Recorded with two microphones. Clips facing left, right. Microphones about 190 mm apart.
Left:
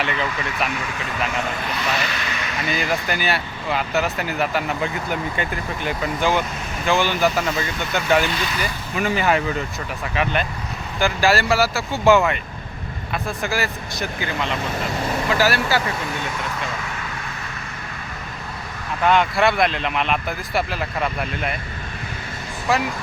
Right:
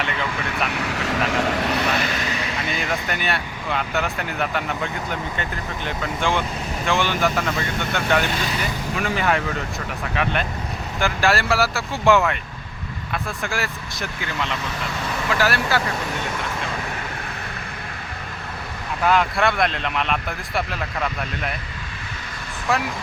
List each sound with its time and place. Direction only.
0.0 s speech: centre (ahead or behind)
0.8 s speech: 75° right (ahead or behind); by 2.5 s 35° right (ahead or behind)
2.6 s speech: centre (ahead or behind)
15.3 s speech: centre (ahead or behind)
19.0 s speech: centre (ahead or behind)
22.7 s speech: centre (ahead or behind)